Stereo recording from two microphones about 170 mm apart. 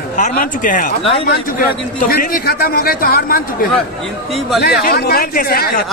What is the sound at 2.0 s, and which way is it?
A man's voice, 55° left (ahead or behind).